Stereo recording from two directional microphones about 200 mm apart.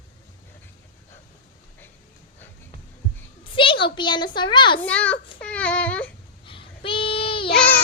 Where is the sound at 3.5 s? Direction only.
25° left (ahead or behind).